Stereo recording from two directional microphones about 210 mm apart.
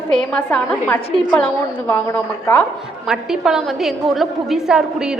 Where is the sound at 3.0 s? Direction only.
Centre (ahead or behind).